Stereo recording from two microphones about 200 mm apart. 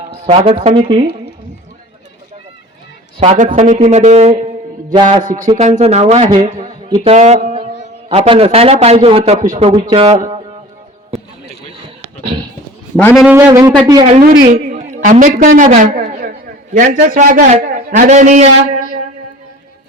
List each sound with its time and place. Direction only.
0.1 s a man's voice: 25° right (ahead or behind)
3.2 s a man's voice: 35° right (ahead or behind)
13.0 s a man's voice: 10° left (ahead or behind)
13.2 s a man's voice: 10° right (ahead or behind)
14.1 s a man's voice: 40° right (ahead or behind)